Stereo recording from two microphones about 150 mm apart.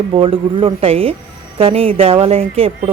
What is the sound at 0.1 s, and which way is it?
A woman's voice, 35° right (ahead or behind).